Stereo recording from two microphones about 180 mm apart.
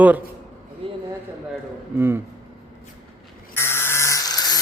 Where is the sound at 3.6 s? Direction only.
15° left (ahead or behind).